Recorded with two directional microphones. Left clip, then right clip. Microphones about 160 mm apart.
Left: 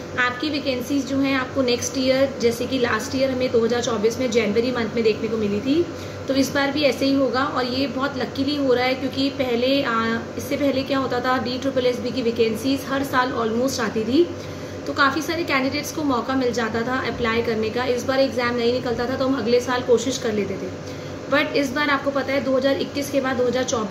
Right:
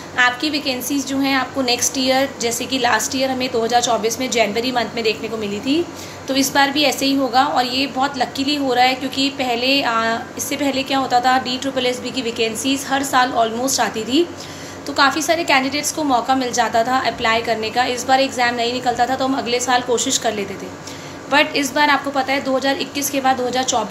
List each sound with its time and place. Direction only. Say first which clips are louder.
0.2 s a woman's voice: right 6 dB; 10° left (ahead or behind)
6.2 s a woman's voice: right 5 dB; 15° left (ahead or behind)